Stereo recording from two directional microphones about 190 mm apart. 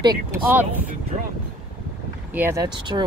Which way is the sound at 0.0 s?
15° right (ahead or behind).